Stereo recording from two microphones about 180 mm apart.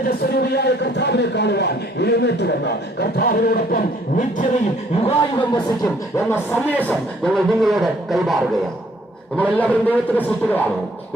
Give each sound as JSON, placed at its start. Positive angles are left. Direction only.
{"t": 0.1, "sound": "a man's voice", "side_deg": 65}
{"t": 5.0, "sound": "speech", "side_deg": 25}
{"t": 7.3, "sound": "a man's voice", "side_deg": 0}